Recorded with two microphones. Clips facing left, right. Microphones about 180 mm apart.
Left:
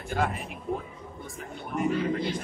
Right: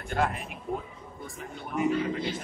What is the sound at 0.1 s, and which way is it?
Speech, centre (ahead or behind).